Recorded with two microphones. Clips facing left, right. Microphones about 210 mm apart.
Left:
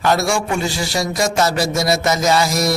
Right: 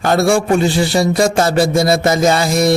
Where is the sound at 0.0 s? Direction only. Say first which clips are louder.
Right 5 dB; 55° right (ahead or behind).